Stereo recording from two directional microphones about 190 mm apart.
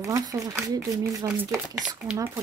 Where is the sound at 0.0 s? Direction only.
20° right (ahead or behind).